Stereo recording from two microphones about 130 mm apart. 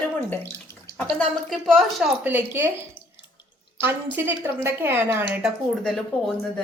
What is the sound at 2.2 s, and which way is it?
Speech, 15° right (ahead or behind).